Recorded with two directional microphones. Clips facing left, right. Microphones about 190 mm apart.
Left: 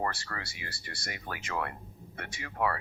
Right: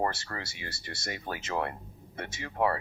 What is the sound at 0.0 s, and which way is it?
Speech, 25° right (ahead or behind).